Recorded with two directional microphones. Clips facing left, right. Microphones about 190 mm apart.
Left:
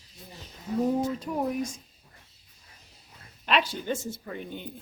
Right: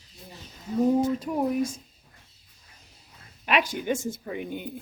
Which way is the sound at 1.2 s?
5° right (ahead or behind).